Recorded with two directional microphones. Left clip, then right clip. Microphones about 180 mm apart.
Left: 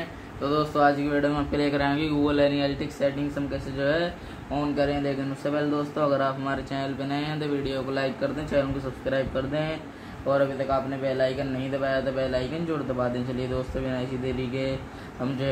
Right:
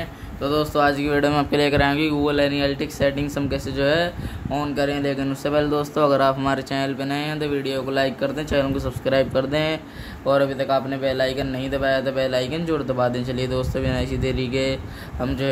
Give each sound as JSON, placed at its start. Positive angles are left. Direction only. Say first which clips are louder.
{"t": 0.4, "sound": "speech", "louder": "right 3 dB", "side_deg": -45}
{"t": 3.4, "sound": "speech", "louder": "right 6 dB", "side_deg": -55}